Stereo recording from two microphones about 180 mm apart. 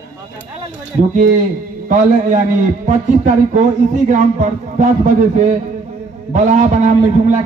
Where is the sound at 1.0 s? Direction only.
45° right (ahead or behind).